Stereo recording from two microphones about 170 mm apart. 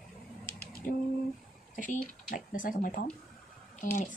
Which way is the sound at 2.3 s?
55° left (ahead or behind).